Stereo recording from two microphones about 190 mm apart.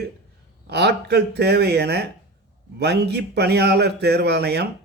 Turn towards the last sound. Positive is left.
turn(degrees=-60)  # may be behind; listen again after turning